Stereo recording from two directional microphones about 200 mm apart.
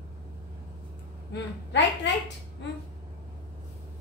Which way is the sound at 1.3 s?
60° left (ahead or behind).